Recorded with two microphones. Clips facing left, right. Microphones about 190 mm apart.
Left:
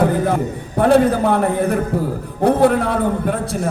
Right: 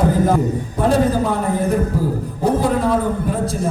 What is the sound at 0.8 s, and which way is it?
A man's voice, 60° left (ahead or behind).